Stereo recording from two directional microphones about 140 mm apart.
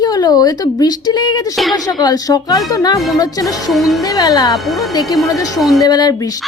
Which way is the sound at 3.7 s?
Centre (ahead or behind).